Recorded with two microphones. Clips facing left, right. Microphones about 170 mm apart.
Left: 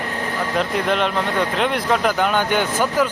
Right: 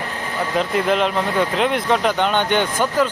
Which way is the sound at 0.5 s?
Centre (ahead or behind).